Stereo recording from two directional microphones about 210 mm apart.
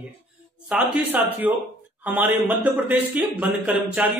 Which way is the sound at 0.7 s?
5° right (ahead or behind).